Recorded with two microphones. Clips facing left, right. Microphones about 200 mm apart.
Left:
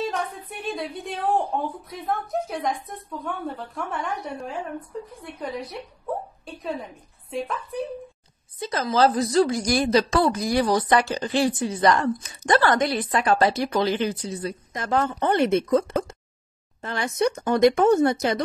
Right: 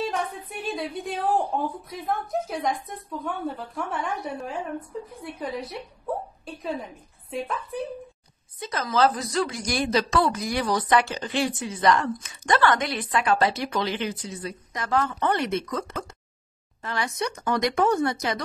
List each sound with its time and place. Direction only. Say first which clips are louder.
0.0 s a woman's voice: even; centre (ahead or behind)
8.5 s a woman's voice: left 2 dB; 30° left (ahead or behind)